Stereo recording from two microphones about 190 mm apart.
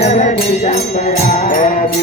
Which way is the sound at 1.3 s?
45° left (ahead or behind).